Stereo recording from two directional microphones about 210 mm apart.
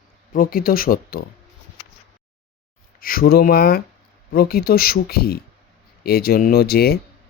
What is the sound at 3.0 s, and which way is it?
Speech, 45° left (ahead or behind).